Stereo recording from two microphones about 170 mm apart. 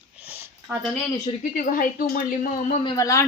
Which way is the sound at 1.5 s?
55° left (ahead or behind).